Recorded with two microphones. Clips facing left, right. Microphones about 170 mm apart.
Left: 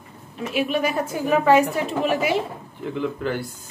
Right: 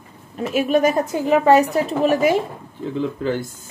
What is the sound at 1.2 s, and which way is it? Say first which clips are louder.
Speech: right 3 dB; 20° right (ahead or behind).